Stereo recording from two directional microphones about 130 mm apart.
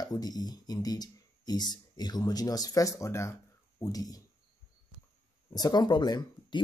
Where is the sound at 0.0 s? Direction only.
30° left (ahead or behind).